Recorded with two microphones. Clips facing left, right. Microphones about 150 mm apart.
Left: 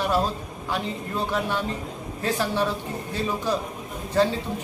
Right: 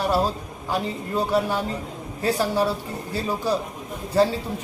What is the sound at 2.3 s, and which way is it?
Speech, 10° right (ahead or behind).